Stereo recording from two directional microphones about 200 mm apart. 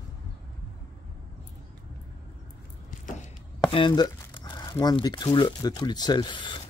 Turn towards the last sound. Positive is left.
turn(degrees=25)  # may be behind; listen again after turning